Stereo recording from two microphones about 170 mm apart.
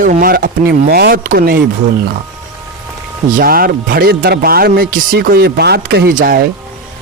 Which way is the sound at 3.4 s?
60° right (ahead or behind).